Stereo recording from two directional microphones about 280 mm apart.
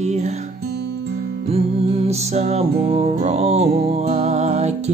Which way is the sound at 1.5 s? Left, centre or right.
Right.